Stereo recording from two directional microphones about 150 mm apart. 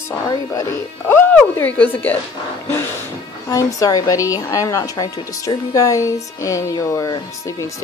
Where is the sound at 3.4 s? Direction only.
20° left (ahead or behind).